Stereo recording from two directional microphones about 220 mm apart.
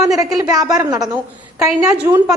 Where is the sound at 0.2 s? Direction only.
15° right (ahead or behind).